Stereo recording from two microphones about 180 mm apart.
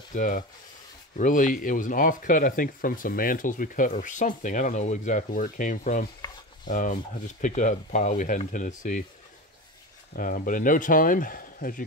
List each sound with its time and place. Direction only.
0.1 s rub: 45° left (ahead or behind)
1.1 s speech: 45° left (ahead or behind)
10.1 s speech: 50° left (ahead or behind)